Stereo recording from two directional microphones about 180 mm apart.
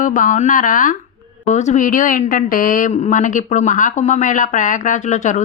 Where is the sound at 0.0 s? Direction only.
45° left (ahead or behind).